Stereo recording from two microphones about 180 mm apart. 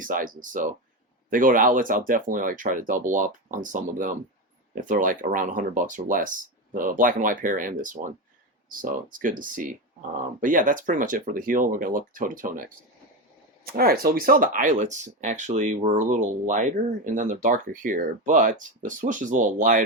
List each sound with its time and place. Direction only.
0.0 s speech: 50° right (ahead or behind)